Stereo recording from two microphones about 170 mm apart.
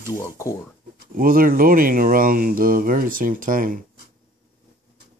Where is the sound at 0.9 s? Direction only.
60° right (ahead or behind).